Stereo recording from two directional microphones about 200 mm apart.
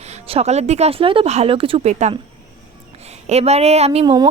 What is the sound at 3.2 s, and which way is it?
Speech, 30° right (ahead or behind).